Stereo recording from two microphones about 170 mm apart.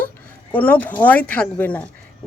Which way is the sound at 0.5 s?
10° left (ahead or behind).